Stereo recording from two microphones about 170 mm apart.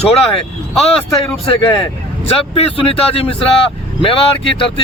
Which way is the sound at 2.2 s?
35° left (ahead or behind).